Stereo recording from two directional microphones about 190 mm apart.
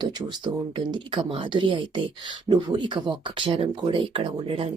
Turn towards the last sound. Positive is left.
turn(degrees=-30)  # may be behind; listen again after turning